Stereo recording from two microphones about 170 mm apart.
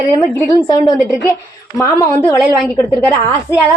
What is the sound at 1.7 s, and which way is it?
Speech, 15° left (ahead or behind).